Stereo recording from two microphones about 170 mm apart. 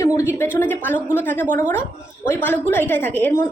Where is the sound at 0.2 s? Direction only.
15° left (ahead or behind).